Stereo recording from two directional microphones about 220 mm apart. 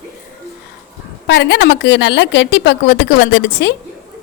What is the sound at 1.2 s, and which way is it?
A woman's voice, 50° left (ahead or behind).